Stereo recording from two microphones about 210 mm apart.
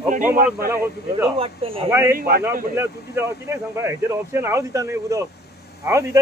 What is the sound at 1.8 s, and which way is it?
Speech, 10° right (ahead or behind).